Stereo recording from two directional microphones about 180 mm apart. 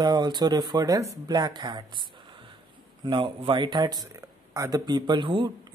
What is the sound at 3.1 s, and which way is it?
Speech, 30° right (ahead or behind).